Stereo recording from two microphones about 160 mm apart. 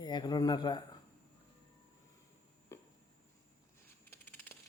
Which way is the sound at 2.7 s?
15° left (ahead or behind).